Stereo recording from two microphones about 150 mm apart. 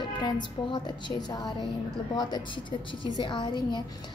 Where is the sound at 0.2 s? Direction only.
30° left (ahead or behind).